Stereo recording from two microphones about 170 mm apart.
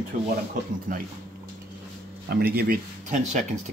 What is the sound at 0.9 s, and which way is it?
Speech, 50° right (ahead or behind).